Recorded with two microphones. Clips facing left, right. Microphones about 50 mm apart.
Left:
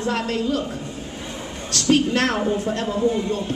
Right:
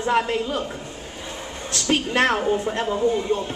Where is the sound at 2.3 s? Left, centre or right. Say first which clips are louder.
Even; centre.